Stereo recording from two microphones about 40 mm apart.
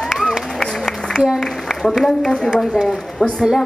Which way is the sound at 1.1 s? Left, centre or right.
Centre.